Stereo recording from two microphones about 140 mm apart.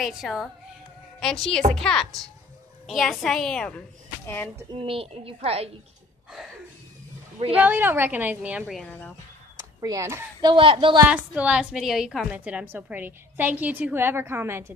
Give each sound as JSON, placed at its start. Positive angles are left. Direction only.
{"t": 0.0, "sound": "a woman's voice", "side_deg": 0}
{"t": 4.7, "sound": "a woman's voice", "side_deg": -40}
{"t": 7.6, "sound": "a woman's voice", "side_deg": -15}
{"t": 8.8, "sound": "speech", "side_deg": 10}
{"t": 9.6, "sound": "a sound", "side_deg": -25}
{"t": 10.4, "sound": "speech", "side_deg": -35}
{"t": 11.1, "sound": "a woman's voice", "side_deg": -10}